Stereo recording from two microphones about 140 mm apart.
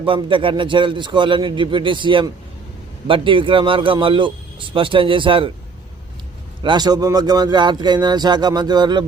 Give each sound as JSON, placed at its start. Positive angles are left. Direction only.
{"t": 0.0, "sound": "speech", "side_deg": -35}
{"t": 6.6, "sound": "speech", "side_deg": -30}